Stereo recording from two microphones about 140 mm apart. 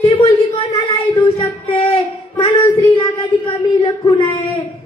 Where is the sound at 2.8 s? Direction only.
25° left (ahead or behind).